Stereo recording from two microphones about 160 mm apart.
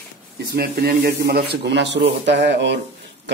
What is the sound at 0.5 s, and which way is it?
Speech, 75° right (ahead or behind).